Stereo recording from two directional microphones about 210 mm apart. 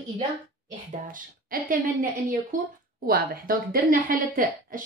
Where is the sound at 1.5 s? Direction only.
45° right (ahead or behind).